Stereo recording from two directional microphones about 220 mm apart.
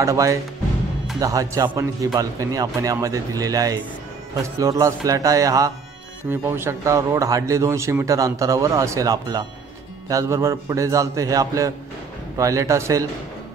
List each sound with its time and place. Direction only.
0.0 s speech: 15° right (ahead or behind)